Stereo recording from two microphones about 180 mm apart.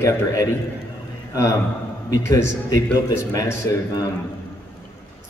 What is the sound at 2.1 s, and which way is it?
Speech, 15° left (ahead or behind).